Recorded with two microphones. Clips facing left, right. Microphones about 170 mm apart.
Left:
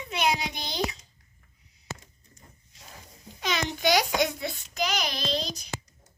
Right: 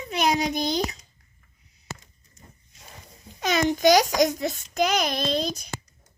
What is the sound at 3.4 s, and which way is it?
A child's voice, 45° right (ahead or behind).